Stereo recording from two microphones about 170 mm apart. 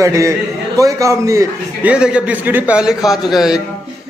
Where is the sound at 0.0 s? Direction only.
20° right (ahead or behind).